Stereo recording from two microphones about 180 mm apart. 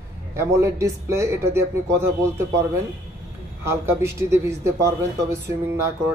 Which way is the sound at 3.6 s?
15° right (ahead or behind).